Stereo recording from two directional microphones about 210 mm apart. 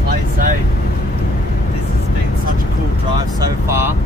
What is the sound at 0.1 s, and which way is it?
Vehicle, 40° right (ahead or behind).